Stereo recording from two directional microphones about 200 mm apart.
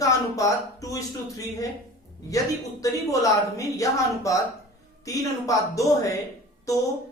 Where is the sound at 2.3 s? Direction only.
15° left (ahead or behind).